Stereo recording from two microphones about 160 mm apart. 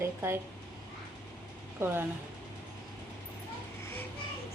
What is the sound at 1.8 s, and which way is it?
Speech, 15° right (ahead or behind).